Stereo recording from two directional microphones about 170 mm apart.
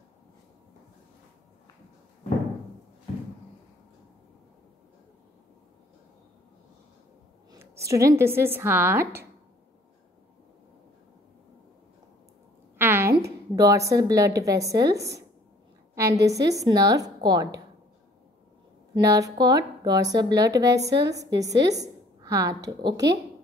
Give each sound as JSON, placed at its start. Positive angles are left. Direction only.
{"t": 7.5, "sound": "speech", "side_deg": -15}
{"t": 12.7, "sound": "a woman's voice", "side_deg": -15}
{"t": 18.9, "sound": "a woman's voice", "side_deg": -20}